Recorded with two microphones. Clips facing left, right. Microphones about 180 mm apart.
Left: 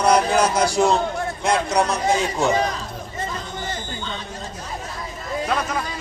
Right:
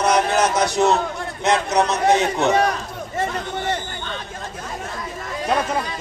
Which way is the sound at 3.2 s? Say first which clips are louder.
Right 6 dB; 65° right (ahead or behind).